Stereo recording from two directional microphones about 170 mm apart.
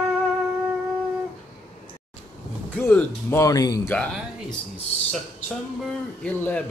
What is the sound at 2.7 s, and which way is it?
Speech, 10° left (ahead or behind).